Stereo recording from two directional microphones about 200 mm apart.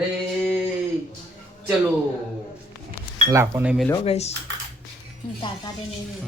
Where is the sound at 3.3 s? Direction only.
15° right (ahead or behind).